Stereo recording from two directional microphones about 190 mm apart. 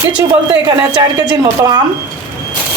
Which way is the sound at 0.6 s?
20° right (ahead or behind).